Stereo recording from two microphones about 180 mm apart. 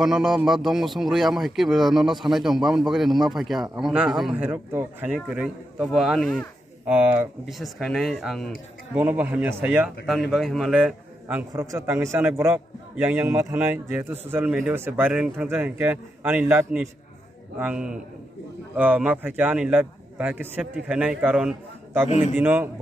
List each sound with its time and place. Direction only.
0.0 s speech: centre (ahead or behind)
8.9 s a man's voice: 10° right (ahead or behind)
22.1 s a man's voice: 40° left (ahead or behind)
22.4 s a man's voice: 10° right (ahead or behind)